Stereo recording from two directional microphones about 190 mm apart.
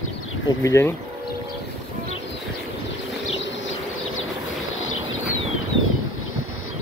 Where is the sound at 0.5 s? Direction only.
15° left (ahead or behind).